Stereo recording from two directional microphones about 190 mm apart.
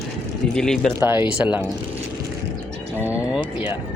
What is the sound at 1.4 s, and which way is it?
Speech, 10° right (ahead or behind).